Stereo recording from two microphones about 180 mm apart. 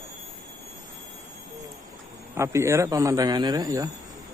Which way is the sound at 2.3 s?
15° right (ahead or behind).